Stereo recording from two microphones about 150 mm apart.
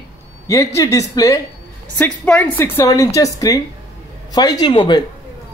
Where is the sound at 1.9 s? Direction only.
10° left (ahead or behind).